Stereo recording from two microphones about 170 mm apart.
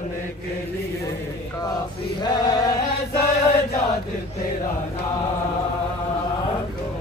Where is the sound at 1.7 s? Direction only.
25° left (ahead or behind).